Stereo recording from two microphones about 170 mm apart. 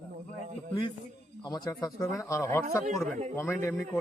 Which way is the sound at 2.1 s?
15° left (ahead or behind).